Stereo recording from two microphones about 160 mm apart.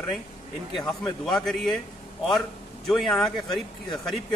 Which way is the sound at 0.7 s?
Centre (ahead or behind).